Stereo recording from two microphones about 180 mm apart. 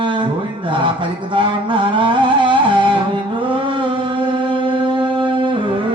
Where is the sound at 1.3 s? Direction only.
30° right (ahead or behind).